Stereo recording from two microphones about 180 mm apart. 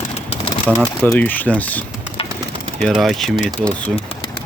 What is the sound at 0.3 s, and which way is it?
Pigeon, 30° left (ahead or behind).